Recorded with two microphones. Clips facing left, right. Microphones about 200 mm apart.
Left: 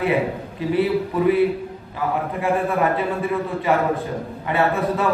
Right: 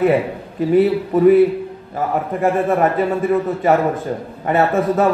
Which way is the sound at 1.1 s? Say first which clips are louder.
Right 8 dB; 45° right (ahead or behind).